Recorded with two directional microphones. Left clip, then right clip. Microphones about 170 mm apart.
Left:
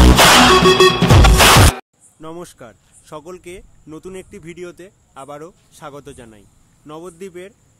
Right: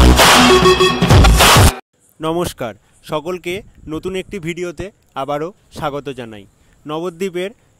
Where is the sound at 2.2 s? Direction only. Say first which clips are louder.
Right 14 dB; 50° right (ahead or behind).